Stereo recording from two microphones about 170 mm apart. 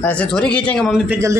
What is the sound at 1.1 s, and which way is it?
Speech, 15° right (ahead or behind).